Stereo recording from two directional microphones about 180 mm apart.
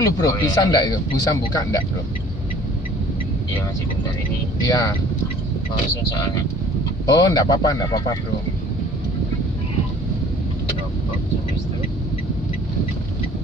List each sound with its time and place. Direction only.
0.2 s a man's voice: 20° left (ahead or behind)
4.6 s a man's voice: 20° left (ahead or behind)
7.1 s a man's voice: 20° left (ahead or behind)